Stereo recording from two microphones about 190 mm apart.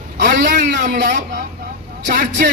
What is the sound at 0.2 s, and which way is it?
A man's voice, 45° right (ahead or behind).